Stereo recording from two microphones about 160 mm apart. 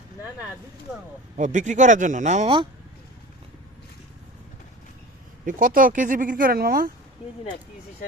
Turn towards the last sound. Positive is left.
turn(degrees=-65)  # may be behind; listen again after turning